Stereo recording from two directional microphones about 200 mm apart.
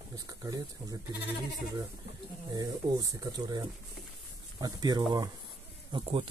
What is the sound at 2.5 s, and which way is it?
Speech, 20° right (ahead or behind).